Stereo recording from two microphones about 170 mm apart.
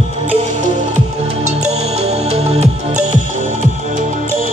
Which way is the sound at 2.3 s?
40° right (ahead or behind).